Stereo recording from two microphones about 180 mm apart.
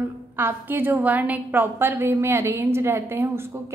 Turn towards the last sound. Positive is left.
turn(degrees=-15)  # may be behind; listen again after turning